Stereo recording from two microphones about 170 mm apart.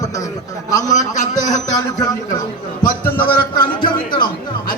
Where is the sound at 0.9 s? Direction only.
45° left (ahead or behind).